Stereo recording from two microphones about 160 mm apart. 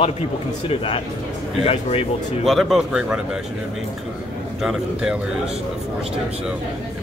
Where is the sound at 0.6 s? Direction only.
35° left (ahead or behind).